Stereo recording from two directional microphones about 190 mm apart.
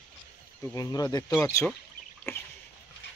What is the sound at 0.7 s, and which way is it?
Speech, 20° left (ahead or behind).